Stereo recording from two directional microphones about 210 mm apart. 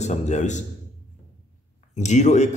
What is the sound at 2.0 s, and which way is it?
Speech, 35° left (ahead or behind).